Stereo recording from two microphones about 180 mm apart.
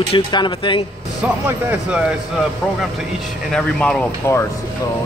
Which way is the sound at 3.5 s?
5° left (ahead or behind).